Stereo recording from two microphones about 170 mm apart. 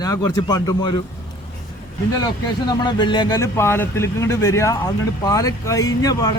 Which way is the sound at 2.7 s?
25° left (ahead or behind).